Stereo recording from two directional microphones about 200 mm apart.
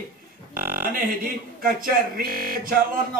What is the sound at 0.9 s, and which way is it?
Speech, 45° right (ahead or behind).